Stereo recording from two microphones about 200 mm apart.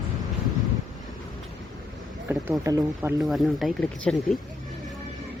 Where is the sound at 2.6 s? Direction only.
15° right (ahead or behind).